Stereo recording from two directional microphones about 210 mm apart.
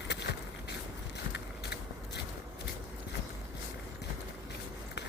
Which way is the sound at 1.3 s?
55° left (ahead or behind).